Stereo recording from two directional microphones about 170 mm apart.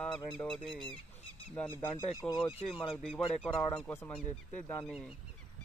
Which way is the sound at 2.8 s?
Centre (ahead or behind).